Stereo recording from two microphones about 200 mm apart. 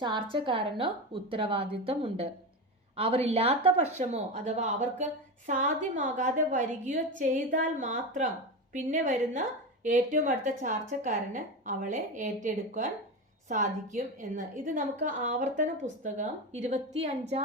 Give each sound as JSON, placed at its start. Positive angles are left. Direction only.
{"t": 0.0, "sound": "a woman's voice", "side_deg": -25}
{"t": 13.9, "sound": "a woman's voice", "side_deg": -40}